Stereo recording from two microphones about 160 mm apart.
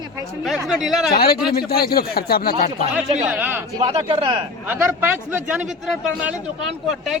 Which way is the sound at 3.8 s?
35° right (ahead or behind).